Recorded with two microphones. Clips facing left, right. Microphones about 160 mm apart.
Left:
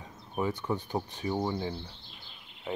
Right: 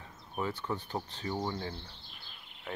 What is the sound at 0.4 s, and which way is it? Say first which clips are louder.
Speech: left 4 dB; 15° left (ahead or behind).